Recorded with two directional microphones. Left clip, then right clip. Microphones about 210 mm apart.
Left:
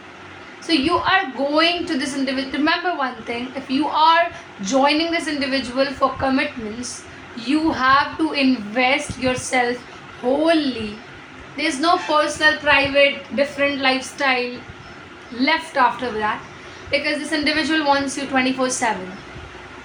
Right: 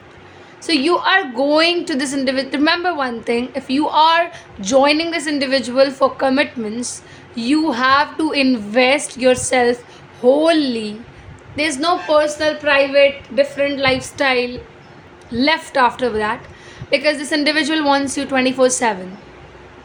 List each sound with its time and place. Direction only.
0.7 s a woman's voice: 50° right (ahead or behind)